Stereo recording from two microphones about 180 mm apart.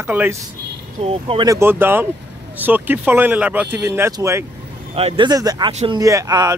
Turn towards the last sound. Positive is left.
turn(degrees=-20)  # may be behind; listen again after turning